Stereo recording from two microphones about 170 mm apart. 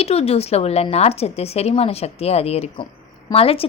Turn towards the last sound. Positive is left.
turn(degrees=35)  # may be behind; listen again after turning